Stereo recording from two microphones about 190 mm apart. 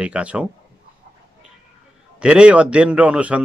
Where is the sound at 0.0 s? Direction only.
5° right (ahead or behind).